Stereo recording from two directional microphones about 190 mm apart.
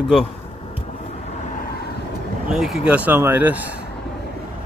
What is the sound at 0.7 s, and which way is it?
Vehicle, 35° left (ahead or behind).